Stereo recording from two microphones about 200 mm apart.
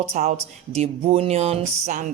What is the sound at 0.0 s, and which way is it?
Speech, 35° right (ahead or behind).